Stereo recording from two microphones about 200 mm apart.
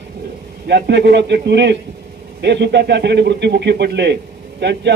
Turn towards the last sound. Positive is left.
turn(degrees=-60)  # may be behind; listen again after turning